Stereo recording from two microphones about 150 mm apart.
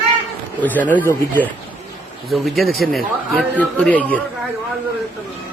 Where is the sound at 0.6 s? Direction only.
10° left (ahead or behind).